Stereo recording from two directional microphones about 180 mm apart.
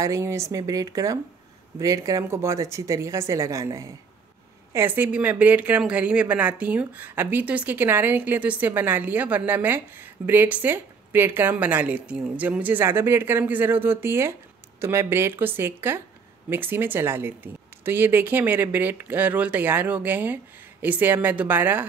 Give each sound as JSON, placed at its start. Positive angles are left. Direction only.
{"t": 0.0, "sound": "speech", "side_deg": -15}